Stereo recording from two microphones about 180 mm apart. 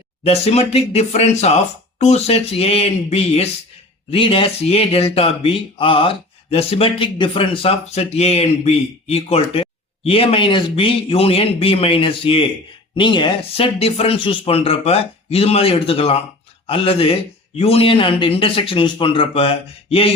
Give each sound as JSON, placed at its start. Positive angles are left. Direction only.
{"t": 0.3, "sound": "speech", "side_deg": 35}